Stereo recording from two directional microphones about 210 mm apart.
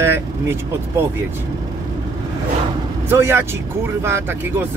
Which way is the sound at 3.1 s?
10° right (ahead or behind).